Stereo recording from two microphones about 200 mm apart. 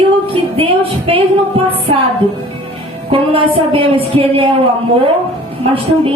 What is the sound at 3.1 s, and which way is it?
A woman's voice, 25° right (ahead or behind).